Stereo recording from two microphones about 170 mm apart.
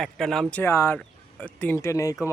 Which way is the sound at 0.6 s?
15° left (ahead or behind).